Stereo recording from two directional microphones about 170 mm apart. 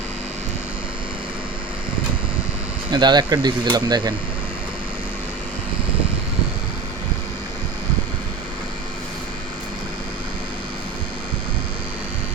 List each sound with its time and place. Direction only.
2.9 s speech: 25° right (ahead or behind)